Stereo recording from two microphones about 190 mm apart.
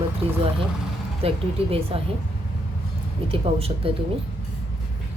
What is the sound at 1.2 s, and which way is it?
Speech, 30° right (ahead or behind).